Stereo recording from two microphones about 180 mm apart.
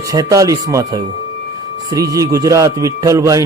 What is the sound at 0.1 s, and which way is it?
A man's voice, 20° right (ahead or behind).